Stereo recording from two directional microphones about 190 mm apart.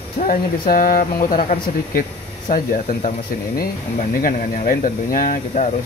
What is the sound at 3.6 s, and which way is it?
Speech, 45° left (ahead or behind).